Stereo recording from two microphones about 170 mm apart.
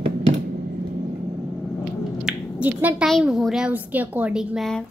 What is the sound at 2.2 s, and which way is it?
Speech, 5° right (ahead or behind).